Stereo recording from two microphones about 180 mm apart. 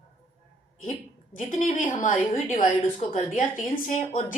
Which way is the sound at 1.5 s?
45° left (ahead or behind).